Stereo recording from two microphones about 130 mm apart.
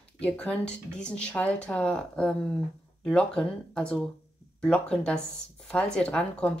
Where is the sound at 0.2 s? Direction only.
10° left (ahead or behind).